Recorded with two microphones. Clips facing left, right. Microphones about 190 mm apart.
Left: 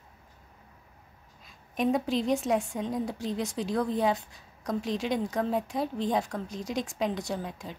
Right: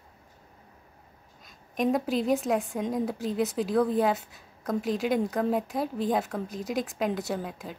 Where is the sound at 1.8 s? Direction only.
Centre (ahead or behind).